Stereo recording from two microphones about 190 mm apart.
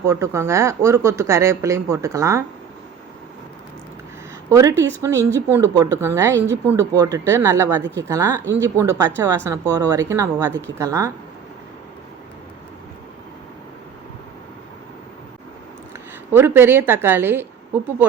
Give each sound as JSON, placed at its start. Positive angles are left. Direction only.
{"t": 0.0, "sound": "speech", "side_deg": -15}
{"t": 4.4, "sound": "speech", "side_deg": -15}
{"t": 16.3, "sound": "speech", "side_deg": -10}